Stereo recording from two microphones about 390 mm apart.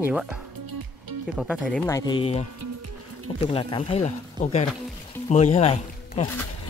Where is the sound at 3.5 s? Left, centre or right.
Centre.